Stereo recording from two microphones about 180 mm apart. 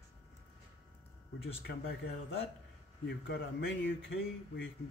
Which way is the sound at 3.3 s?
70° left (ahead or behind).